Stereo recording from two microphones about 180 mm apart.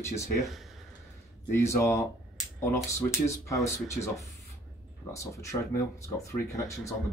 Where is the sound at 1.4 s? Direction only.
15° left (ahead or behind).